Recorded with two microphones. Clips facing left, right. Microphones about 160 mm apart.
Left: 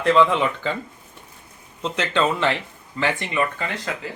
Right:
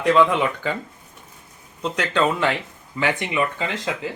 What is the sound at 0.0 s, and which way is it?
Speech, 10° right (ahead or behind).